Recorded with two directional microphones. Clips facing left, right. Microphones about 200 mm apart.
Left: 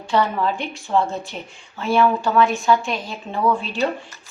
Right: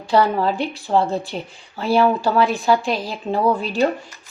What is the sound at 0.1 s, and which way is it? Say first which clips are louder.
A woman's voice: right 3 dB; 35° right (ahead or behind).